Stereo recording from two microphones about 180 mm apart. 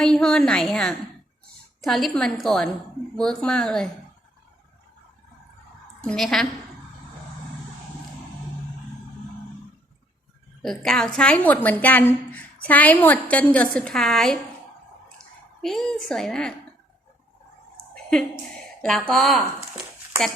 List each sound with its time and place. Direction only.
0.0 s a woman's voice: 5° left (ahead or behind)
6.0 s a woman's voice: 5° left (ahead or behind)
10.6 s a woman's voice: centre (ahead or behind)
18.1 s a woman's voice: 5° left (ahead or behind)